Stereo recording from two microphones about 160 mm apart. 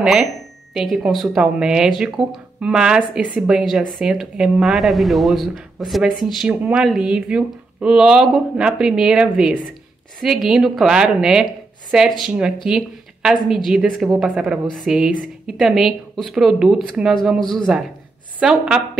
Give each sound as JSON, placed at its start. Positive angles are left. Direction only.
{"t": 0.0, "sound": "speech", "side_deg": 0}